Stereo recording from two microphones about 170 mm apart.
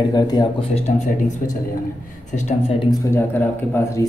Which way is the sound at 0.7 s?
45° left (ahead or behind).